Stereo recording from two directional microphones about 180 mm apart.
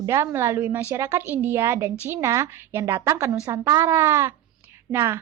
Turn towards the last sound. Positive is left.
turn(degrees=-15)  # may be behind; listen again after turning